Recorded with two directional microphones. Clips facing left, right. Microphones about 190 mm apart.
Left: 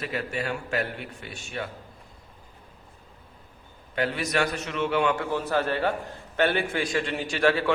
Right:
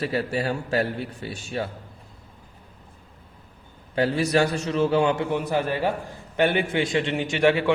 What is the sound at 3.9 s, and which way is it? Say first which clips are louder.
A man's voice: right 6 dB; 30° right (ahead or behind).